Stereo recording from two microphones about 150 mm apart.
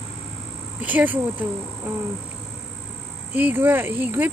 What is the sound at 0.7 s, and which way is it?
Speech, 10° right (ahead or behind).